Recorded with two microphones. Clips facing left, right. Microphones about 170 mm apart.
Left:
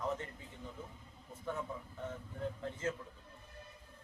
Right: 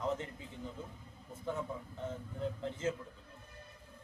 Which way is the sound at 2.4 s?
25° right (ahead or behind).